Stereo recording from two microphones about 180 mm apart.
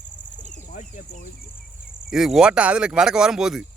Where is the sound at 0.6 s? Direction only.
50° left (ahead or behind).